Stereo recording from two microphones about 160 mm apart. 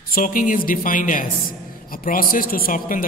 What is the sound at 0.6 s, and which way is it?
A man's voice, 60° left (ahead or behind).